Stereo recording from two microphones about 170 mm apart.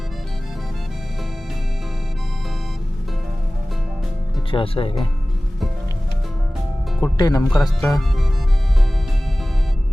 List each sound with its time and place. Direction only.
4.5 s speech: 30° left (ahead or behind)
7.0 s speech: 20° left (ahead or behind)
7.5 s speech: centre (ahead or behind)